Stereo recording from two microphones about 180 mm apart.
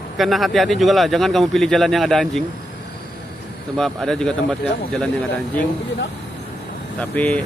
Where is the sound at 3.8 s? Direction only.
Centre (ahead or behind).